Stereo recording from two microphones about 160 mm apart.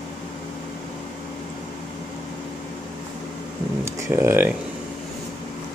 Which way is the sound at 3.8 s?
15° right (ahead or behind).